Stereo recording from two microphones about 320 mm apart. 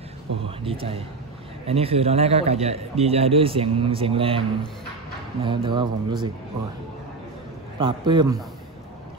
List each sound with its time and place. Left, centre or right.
0.6 s a man's voice: centre
7.8 s a man's voice: centre